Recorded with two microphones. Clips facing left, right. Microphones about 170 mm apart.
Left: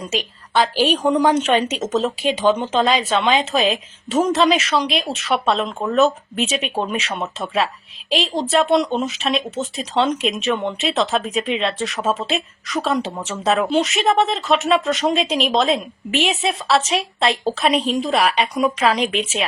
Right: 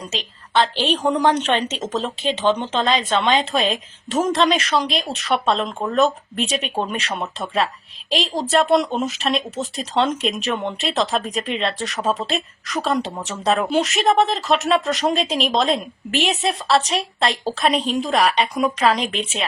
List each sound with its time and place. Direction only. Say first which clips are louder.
0.0 s a woman's voice: left 5 dB; 20° right (ahead or behind)
0.5 s speech: left 2 dB; 10° left (ahead or behind)